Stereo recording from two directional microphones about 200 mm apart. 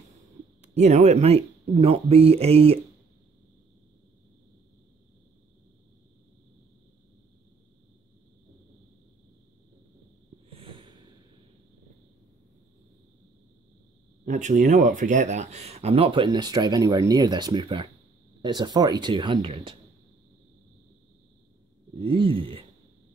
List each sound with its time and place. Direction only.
0.6 s speech: 35° right (ahead or behind)
10.5 s snort: 25° right (ahead or behind)
14.2 s speech: 40° right (ahead or behind)
21.9 s speech: 25° right (ahead or behind)